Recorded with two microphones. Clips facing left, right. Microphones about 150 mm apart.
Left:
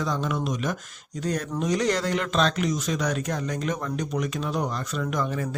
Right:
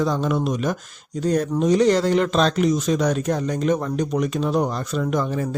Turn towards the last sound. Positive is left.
turn(degrees=-30)  # may be behind; listen again after turning